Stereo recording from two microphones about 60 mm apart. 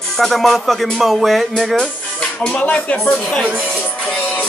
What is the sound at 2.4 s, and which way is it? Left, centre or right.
Speech, centre.